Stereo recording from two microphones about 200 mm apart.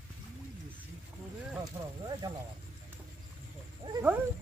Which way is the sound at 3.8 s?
25° right (ahead or behind).